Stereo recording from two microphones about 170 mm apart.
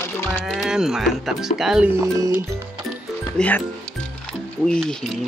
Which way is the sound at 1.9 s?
15° right (ahead or behind).